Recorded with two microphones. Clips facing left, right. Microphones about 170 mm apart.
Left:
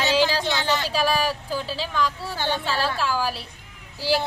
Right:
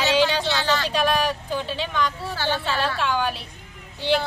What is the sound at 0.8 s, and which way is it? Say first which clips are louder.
Speech: right 1 dB; 5° left (ahead or behind).